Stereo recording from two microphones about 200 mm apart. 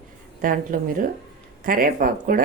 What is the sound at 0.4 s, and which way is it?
Speech, 45° right (ahead or behind).